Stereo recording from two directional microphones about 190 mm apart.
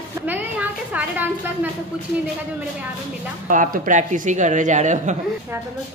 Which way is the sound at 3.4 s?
45° right (ahead or behind).